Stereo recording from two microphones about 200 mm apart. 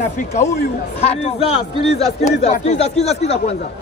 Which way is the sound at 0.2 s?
35° left (ahead or behind).